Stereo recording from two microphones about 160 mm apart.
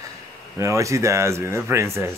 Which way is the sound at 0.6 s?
20° right (ahead or behind).